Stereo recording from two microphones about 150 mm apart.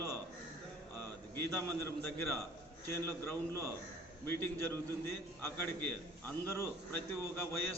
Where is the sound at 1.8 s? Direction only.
15° left (ahead or behind).